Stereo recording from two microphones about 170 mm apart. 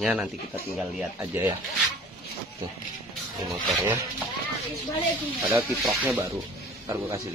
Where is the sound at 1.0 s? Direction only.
15° right (ahead or behind).